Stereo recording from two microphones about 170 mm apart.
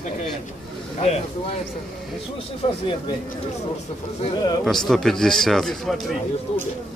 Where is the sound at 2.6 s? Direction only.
35° left (ahead or behind).